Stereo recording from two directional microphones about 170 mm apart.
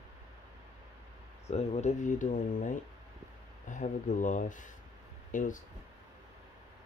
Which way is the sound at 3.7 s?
50° left (ahead or behind).